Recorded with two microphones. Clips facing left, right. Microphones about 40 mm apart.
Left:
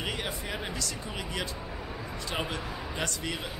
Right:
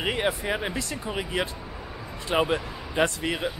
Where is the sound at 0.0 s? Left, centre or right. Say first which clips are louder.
Right 8 dB; right.